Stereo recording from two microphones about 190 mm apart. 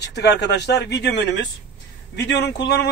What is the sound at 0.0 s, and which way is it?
A man's voice, 60° left (ahead or behind).